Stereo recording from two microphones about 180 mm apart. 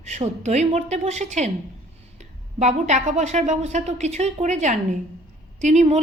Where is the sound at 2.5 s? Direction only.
40° right (ahead or behind).